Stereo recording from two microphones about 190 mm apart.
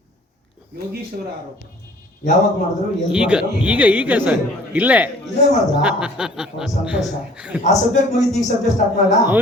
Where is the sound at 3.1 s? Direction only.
5° right (ahead or behind).